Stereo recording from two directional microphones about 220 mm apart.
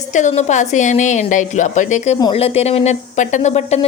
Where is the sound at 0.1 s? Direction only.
30° left (ahead or behind).